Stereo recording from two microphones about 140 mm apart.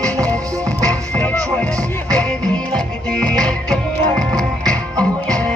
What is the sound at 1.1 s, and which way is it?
Music, 10° left (ahead or behind).